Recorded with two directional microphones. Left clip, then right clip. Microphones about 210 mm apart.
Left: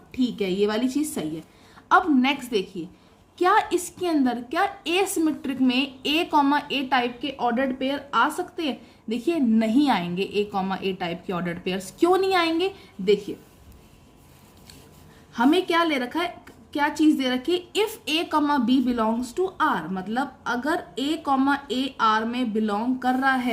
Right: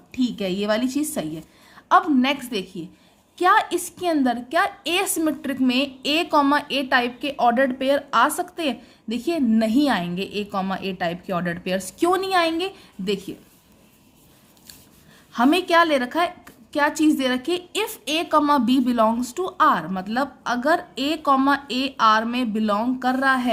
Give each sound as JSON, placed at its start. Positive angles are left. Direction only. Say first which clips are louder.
{"t": 0.1, "sound": "a woman's voice", "louder": "right 1 dB", "side_deg": -30}
{"t": 15.3, "sound": "a woman's voice", "louder": "right 3 dB", "side_deg": -35}